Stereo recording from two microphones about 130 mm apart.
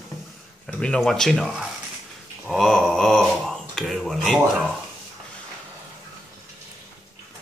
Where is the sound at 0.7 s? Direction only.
5° left (ahead or behind).